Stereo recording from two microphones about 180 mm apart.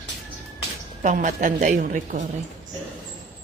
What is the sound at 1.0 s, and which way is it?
A woman's voice, 45° right (ahead or behind).